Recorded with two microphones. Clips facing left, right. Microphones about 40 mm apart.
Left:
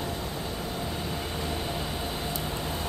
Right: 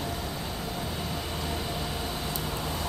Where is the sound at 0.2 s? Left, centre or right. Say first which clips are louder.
Left 1 dB; left.